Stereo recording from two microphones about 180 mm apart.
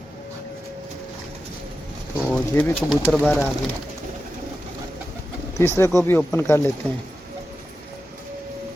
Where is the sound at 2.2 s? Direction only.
5° left (ahead or behind).